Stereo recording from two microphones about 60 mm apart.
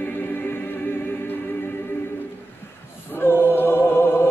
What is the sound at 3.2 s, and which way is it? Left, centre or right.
Choir, left.